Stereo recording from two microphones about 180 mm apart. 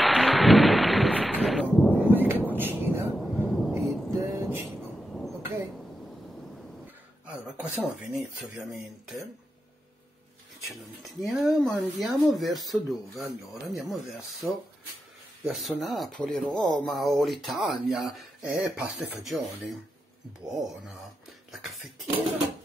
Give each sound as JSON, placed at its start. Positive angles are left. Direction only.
{"t": 0.0, "sound": "thunder", "side_deg": 0}
{"t": 2.0, "sound": "vehicle", "side_deg": -10}
{"t": 3.4, "sound": "thunder", "side_deg": 0}
{"t": 3.7, "sound": "a sound", "side_deg": -15}
{"t": 4.6, "sound": "a sound", "side_deg": 0}
{"t": 7.2, "sound": "speech", "side_deg": -10}
{"t": 10.6, "sound": "speech", "side_deg": 0}
{"t": 14.4, "sound": "speech", "side_deg": 0}